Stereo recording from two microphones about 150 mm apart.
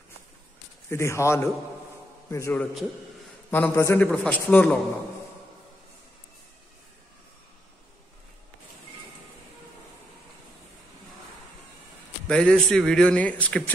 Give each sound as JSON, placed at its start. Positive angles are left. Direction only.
{"t": 0.8, "sound": "a man's voice", "side_deg": 20}
{"t": 12.3, "sound": "a man's voice", "side_deg": 5}